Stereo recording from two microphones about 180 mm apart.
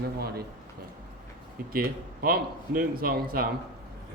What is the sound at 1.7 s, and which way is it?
A man's voice, 55° right (ahead or behind).